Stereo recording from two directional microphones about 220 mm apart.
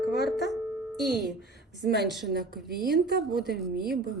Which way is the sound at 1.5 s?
50° right (ahead or behind).